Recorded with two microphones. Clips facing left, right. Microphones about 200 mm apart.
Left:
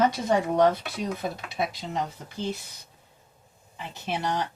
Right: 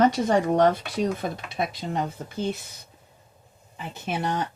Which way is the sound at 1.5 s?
55° right (ahead or behind).